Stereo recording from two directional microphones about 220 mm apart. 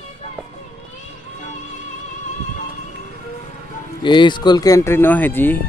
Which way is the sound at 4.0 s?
20° left (ahead or behind).